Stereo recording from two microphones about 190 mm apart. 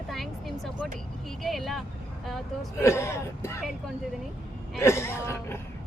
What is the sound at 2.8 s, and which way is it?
Speech, 15° left (ahead or behind).